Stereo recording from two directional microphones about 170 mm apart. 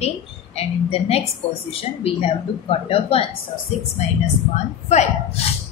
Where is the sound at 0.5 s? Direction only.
35° left (ahead or behind).